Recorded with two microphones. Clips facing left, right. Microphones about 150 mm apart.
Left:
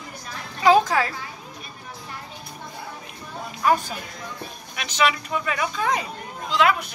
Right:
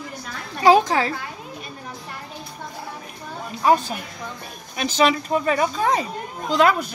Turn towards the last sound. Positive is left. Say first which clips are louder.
# right 3 dB
turn(degrees=-40)  # may be behind; listen again after turning